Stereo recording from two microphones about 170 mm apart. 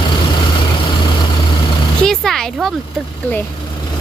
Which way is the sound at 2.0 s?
Centre (ahead or behind).